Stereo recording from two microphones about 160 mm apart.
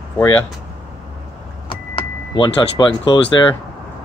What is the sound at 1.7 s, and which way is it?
Speech, 30° left (ahead or behind).